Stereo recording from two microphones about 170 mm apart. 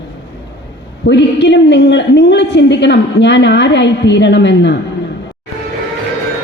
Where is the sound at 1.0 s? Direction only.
90° left.